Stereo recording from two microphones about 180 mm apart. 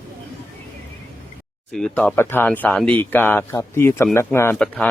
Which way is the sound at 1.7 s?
5° left (ahead or behind).